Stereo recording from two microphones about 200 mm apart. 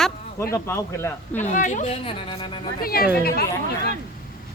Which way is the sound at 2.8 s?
50° left (ahead or behind).